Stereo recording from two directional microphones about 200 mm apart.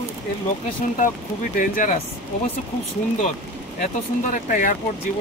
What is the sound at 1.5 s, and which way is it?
Speech, 40° left (ahead or behind).